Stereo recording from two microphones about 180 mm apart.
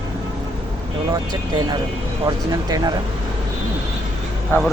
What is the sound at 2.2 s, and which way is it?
Speech, 20° right (ahead or behind).